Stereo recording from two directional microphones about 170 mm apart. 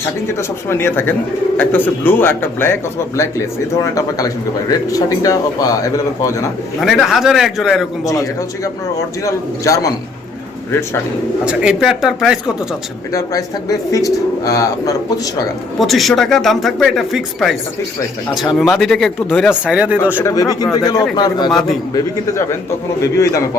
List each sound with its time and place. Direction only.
0.3 s a man's voice: 15° left (ahead or behind)
6.7 s speech: centre (ahead or behind)
8.0 s a man's voice: 20° left (ahead or behind)
11.4 s speech: 5° right (ahead or behind)
13.1 s a man's voice: 20° left (ahead or behind)
15.8 s speech: centre (ahead or behind)
19.6 s speech: 5° right (ahead or behind)
20.2 s a man's voice: 20° left (ahead or behind)
23.1 s a man's voice: 20° left (ahead or behind)